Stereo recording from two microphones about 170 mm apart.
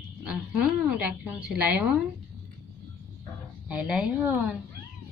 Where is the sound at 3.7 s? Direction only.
5° right (ahead or behind).